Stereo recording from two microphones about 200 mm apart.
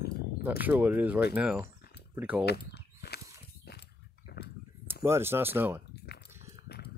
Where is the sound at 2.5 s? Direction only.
55° left (ahead or behind).